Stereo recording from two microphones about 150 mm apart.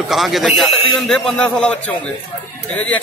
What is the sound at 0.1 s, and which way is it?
A man's voice, centre (ahead or behind).